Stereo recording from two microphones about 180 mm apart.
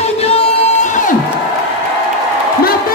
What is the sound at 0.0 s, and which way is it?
Crowd, 35° left (ahead or behind).